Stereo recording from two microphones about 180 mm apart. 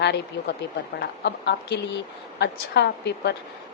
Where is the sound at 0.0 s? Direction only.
70° left (ahead or behind).